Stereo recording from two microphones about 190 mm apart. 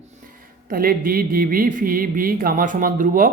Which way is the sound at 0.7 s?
50° right (ahead or behind).